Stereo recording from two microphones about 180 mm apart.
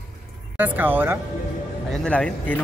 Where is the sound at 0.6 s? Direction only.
10° right (ahead or behind).